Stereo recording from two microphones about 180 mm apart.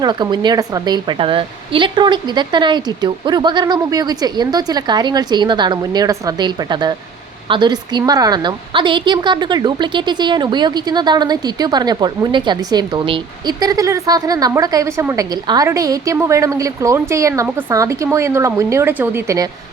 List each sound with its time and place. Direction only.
0.0 s a woman's voice: 25° right (ahead or behind)